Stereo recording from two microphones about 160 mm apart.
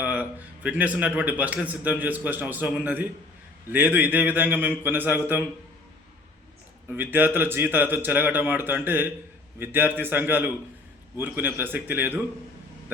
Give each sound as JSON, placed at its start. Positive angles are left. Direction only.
{"t": 0.0, "sound": "a man's voice", "side_deg": -10}
{"t": 6.9, "sound": "a man's voice", "side_deg": -10}